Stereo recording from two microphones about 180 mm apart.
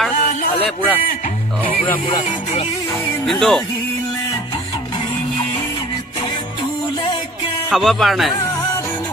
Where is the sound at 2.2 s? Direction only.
35° left (ahead or behind).